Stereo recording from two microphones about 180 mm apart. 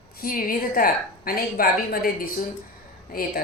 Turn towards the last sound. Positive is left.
turn(degrees=55)  # may be behind; listen again after turning